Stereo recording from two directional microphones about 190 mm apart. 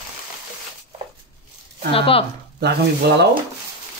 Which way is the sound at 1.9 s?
30° left (ahead or behind).